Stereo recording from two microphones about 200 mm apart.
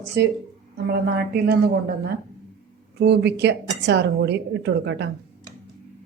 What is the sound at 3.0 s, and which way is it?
A woman's voice, 60° right (ahead or behind).